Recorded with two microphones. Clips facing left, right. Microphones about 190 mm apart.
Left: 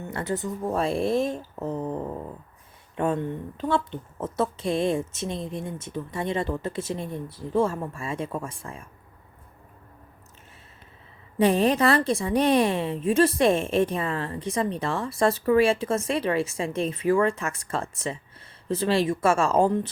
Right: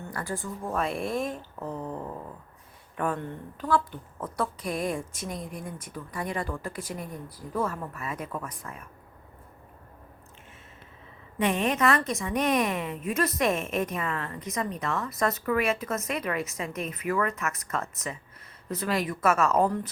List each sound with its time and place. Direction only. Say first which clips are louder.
0.0 s a woman's voice: left 5 dB; 25° left (ahead or behind)
11.3 s a woman's voice: left 5 dB; 35° left (ahead or behind)